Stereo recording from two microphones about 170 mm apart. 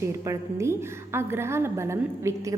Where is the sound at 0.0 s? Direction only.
15° right (ahead or behind).